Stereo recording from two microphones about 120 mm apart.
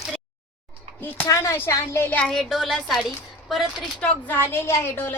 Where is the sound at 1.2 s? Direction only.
25° left (ahead or behind).